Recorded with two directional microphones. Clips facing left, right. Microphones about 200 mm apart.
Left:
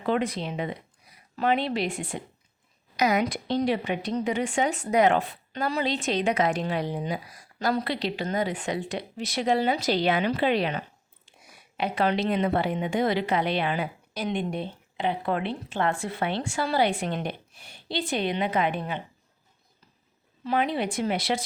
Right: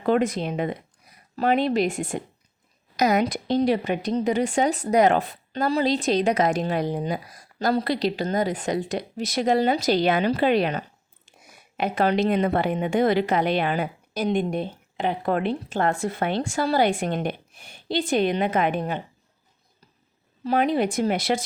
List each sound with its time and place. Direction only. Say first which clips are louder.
0.0 s a woman's voice: right 5 dB; 45° right (ahead or behind)
20.4 s a woman's voice: right 5 dB; 40° right (ahead or behind)